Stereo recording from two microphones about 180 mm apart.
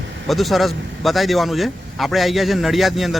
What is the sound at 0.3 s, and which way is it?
A man's voice, centre (ahead or behind).